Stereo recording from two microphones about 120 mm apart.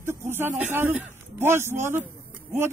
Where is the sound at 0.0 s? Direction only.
20° right (ahead or behind).